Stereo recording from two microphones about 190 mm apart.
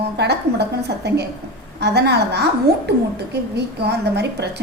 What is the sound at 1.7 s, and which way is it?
A woman's voice, 65° right (ahead or behind).